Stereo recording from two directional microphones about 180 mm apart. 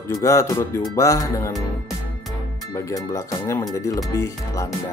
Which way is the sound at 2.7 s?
20° left (ahead or behind).